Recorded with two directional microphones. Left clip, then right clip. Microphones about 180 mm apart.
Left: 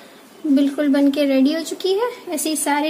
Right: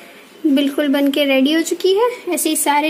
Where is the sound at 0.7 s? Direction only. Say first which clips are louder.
Right 1 dB; 40° right (ahead or behind).